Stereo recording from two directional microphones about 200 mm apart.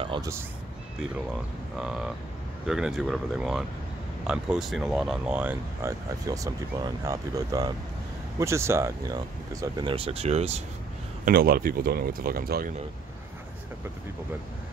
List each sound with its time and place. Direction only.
0.0 s speech: 20° right (ahead or behind)
1.8 s speech: 5° right (ahead or behind); by 10.6 s 30° right (ahead or behind)
11.2 s speech: 50° right (ahead or behind)